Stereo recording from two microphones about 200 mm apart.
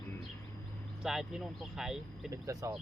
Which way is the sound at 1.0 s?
Centre (ahead or behind).